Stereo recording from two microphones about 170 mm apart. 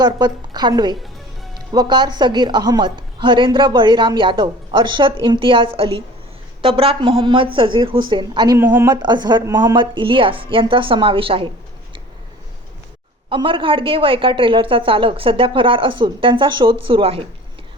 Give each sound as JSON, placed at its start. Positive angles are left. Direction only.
{"t": 0.0, "sound": "a woman's voice", "side_deg": -25}
{"t": 8.5, "sound": "speech", "side_deg": -15}
{"t": 8.9, "sound": "speech", "side_deg": -25}
{"t": 13.3, "sound": "a woman's voice", "side_deg": -30}